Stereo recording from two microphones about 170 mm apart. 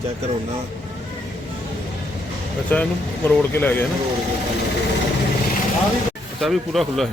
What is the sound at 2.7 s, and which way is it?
Speech, 10° left (ahead or behind).